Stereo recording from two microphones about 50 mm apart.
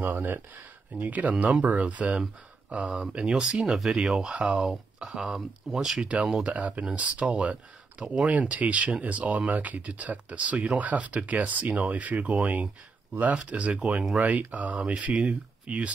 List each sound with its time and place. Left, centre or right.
0.0 s speech: right; by 6.0 s centre
6.0 s speech: right